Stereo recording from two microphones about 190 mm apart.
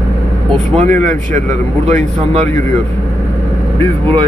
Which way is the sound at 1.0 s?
40° right (ahead or behind).